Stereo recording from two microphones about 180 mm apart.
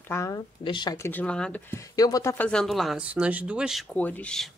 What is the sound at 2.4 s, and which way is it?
A woman's voice, 5° left (ahead or behind).